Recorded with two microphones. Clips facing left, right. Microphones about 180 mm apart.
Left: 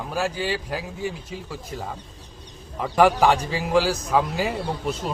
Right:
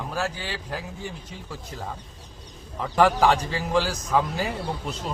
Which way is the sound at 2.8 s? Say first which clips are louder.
Left 2 dB; 10° left (ahead or behind).